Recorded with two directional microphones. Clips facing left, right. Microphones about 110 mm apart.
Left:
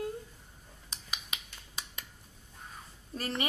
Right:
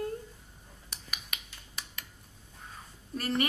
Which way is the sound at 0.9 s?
20° left (ahead or behind).